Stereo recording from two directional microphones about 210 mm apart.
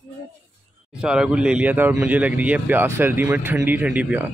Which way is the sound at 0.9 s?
5° right (ahead or behind).